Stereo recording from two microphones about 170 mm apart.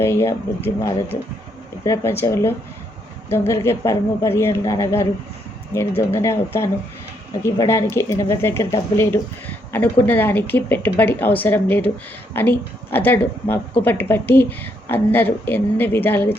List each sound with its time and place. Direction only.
0.0 s speech: 15° left (ahead or behind)